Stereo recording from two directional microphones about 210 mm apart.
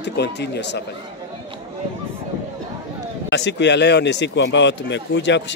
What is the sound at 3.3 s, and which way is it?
Speech, 55° left (ahead or behind).